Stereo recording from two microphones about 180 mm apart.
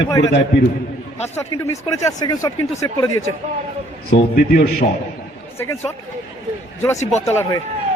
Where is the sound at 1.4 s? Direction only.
15° left (ahead or behind).